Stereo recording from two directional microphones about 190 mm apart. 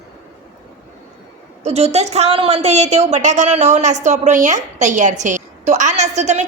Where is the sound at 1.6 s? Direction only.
35° right (ahead or behind).